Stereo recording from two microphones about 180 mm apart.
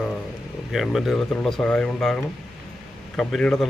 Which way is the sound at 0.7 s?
Centre (ahead or behind).